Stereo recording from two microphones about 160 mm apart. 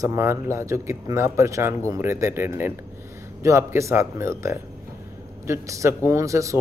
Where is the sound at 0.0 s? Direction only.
20° right (ahead or behind).